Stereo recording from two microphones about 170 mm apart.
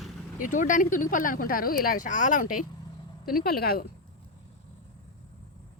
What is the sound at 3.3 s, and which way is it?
Speech, 60° left (ahead or behind).